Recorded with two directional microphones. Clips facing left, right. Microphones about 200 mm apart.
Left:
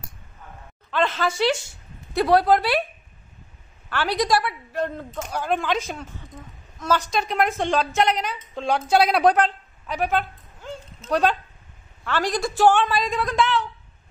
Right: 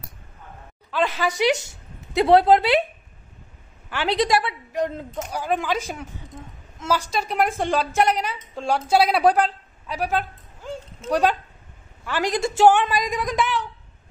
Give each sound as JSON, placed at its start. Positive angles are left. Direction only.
{"t": 0.9, "sound": "a woman's voice", "side_deg": -15}
{"t": 3.9, "sound": "a woman's voice", "side_deg": -20}